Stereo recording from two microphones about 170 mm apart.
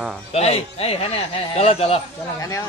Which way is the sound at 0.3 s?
35° left (ahead or behind).